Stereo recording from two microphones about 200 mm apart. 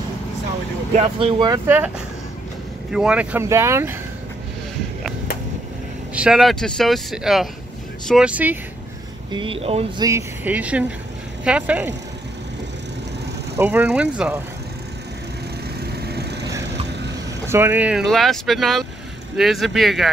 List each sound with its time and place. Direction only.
0.9 s speech: 30° right (ahead or behind)
2.9 s speech: 5° right (ahead or behind)
6.1 s speech: 5° right (ahead or behind)
9.3 s speech: 25° right (ahead or behind)
10.0 s speech: 10° right (ahead or behind)
13.6 s speech: 10° right (ahead or behind)
15.8 s vehicle: 55° right (ahead or behind)
17.5 s speech: 10° right (ahead or behind)